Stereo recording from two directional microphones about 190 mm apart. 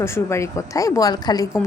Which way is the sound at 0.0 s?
15° left (ahead or behind).